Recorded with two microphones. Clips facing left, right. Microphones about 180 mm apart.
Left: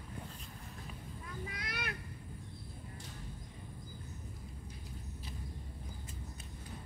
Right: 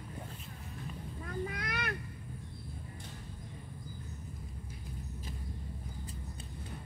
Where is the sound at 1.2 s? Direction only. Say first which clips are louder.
Right 8 dB; 55° right (ahead or behind).